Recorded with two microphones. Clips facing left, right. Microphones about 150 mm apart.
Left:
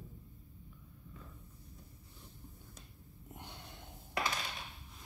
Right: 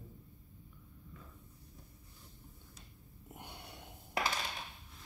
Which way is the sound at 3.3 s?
10° right (ahead or behind).